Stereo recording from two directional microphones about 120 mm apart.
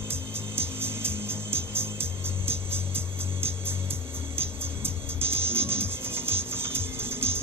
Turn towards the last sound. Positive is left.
turn(degrees=-20)  # may be behind; listen again after turning